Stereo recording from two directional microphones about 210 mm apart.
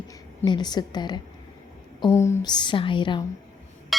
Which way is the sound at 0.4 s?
20° left (ahead or behind).